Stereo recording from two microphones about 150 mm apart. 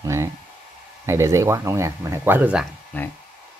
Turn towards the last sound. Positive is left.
turn(degrees=10)  # may be behind; listen again after turning